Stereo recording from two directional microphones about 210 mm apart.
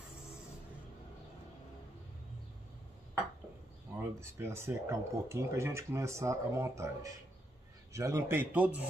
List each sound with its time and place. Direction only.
4.2 s speech: 10° right (ahead or behind)